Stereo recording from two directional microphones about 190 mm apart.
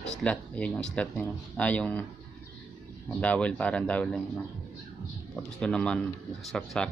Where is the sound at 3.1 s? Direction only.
5° left (ahead or behind).